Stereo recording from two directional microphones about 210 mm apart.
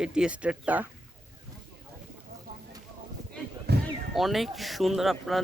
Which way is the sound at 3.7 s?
50° right (ahead or behind).